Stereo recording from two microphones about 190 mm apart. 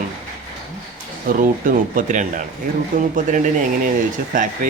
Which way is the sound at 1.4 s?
45° right (ahead or behind).